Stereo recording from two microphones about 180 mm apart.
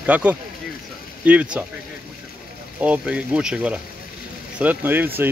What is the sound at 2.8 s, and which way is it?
Speech, 5° right (ahead or behind).